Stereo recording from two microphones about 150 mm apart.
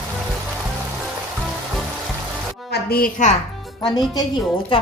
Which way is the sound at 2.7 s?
90° left.